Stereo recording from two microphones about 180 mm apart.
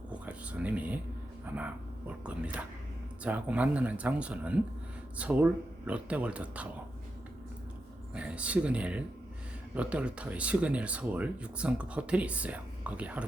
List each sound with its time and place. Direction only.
0.1 s a sound: 10° right (ahead or behind)
1.5 s speech: 10° right (ahead or behind)
8.1 s speech: 5° right (ahead or behind)